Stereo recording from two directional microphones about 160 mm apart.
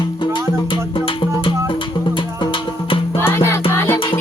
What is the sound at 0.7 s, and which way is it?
Music, 35° left (ahead or behind).